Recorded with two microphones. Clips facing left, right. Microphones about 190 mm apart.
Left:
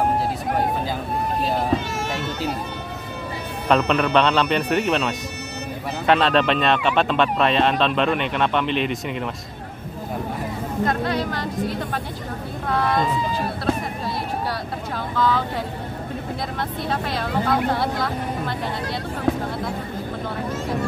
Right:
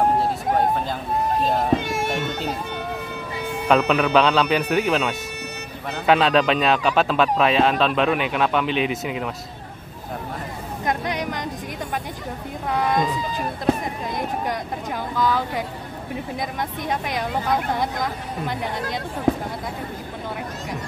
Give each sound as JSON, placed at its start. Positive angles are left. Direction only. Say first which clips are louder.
{"t": 3.6, "sound": "speech", "louder": "right 1 dB", "side_deg": -5}
{"t": 10.9, "sound": "speech", "louder": "right 1 dB", "side_deg": -15}
{"t": 15.1, "sound": "speech", "louder": "left 1 dB", "side_deg": -10}
{"t": 16.9, "sound": "speech", "louder": "left 1 dB", "side_deg": -15}